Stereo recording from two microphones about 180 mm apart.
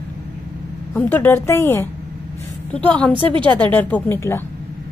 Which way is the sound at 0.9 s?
10° left (ahead or behind).